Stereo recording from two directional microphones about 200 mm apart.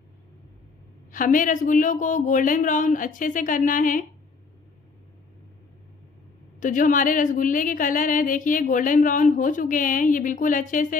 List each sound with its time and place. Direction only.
1.1 s a woman's voice: 40° left (ahead or behind)
6.6 s a woman's voice: 40° left (ahead or behind)